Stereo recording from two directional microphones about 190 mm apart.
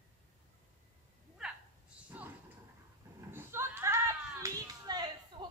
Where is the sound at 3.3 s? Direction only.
10° right (ahead or behind).